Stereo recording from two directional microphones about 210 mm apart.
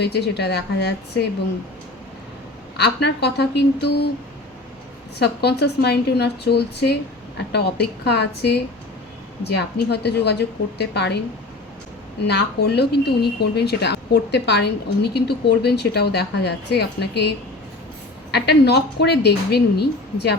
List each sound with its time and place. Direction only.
0.0 s speech: 50° left (ahead or behind)
2.7 s speech: 55° left (ahead or behind)
5.2 s speech: 50° left (ahead or behind)
12.2 s speech: 55° left (ahead or behind)